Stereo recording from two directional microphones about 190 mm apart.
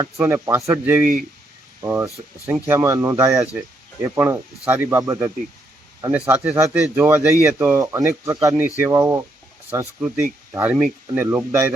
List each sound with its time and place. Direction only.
0.2 s speech: 15° right (ahead or behind)